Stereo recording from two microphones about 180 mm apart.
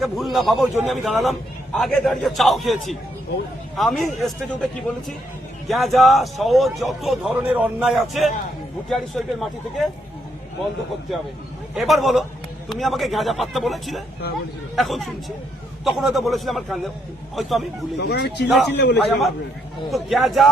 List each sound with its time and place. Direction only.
0.0 s a man's voice: centre (ahead or behind)
11.7 s a man's voice: centre (ahead or behind)
17.9 s speech: 65° left (ahead or behind)
18.4 s a man's voice: centre (ahead or behind)
18.7 s speech: 65° left (ahead or behind)
19.9 s a man's voice: centre (ahead or behind)